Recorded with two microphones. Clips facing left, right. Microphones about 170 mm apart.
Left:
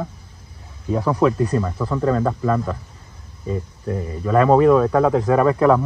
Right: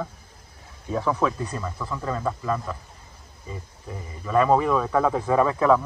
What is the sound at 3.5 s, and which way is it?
Speech, 55° left (ahead or behind).